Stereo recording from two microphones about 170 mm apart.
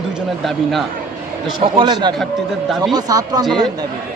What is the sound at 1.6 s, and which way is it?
Speech, 30° right (ahead or behind).